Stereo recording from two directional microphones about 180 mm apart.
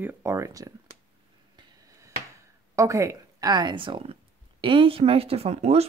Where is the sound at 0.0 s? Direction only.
15° right (ahead or behind).